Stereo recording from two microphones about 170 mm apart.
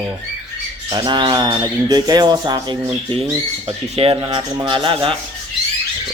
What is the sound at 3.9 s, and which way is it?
Speech, 30° right (ahead or behind).